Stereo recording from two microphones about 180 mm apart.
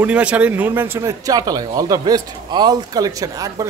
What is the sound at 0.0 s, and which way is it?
A man's voice, 5° right (ahead or behind).